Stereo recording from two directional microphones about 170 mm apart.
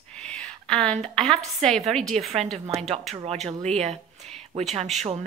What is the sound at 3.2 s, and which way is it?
A woman's voice, 40° right (ahead or behind).